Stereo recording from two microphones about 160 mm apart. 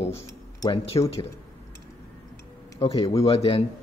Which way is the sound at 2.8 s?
35° left (ahead or behind).